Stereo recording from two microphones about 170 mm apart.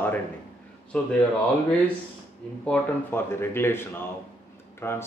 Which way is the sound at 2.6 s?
15° left (ahead or behind).